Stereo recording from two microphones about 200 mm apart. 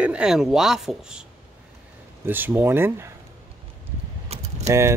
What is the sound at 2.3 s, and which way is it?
Speech, 10° right (ahead or behind).